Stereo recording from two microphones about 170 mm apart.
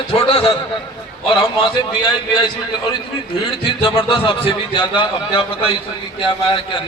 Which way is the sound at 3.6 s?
30° left (ahead or behind).